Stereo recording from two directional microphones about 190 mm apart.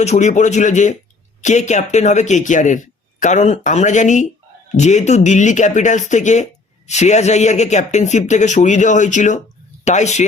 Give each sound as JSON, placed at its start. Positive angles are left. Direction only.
{"t": 0.0, "sound": "speech", "side_deg": 35}